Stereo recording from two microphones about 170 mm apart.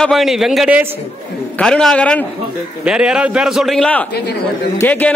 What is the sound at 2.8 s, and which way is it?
A man's voice, 5° right (ahead or behind).